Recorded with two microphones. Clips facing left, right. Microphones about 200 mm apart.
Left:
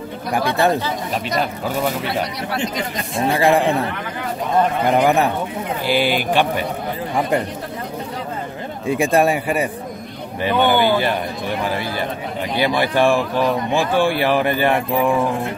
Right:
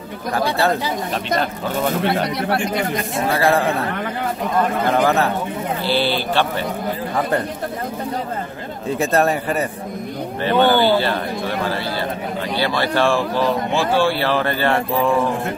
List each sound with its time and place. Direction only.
0.3 s speech: 15° left (ahead or behind)
3.3 s speech: 15° left (ahead or behind)
4.9 s speech: 15° left (ahead or behind)
8.8 s speech: 10° left (ahead or behind)